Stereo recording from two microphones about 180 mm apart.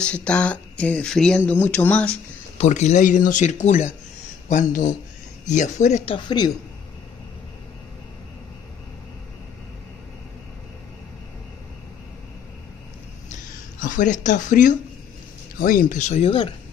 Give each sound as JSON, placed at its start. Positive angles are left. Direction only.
{"t": 0.0, "sound": "speech", "side_deg": 5}
{"t": 2.5, "sound": "speech", "side_deg": 40}
{"t": 6.1, "sound": "a woman's voice", "side_deg": 25}
{"t": 13.7, "sound": "speech", "side_deg": 45}